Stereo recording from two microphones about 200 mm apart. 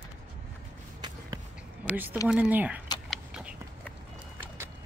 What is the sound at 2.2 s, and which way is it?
Speech, 5° right (ahead or behind).